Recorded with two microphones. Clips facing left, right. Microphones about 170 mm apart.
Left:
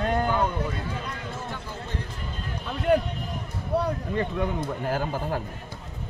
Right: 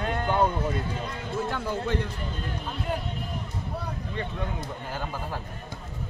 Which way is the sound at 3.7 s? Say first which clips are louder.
Left 13 dB; 75° left (ahead or behind).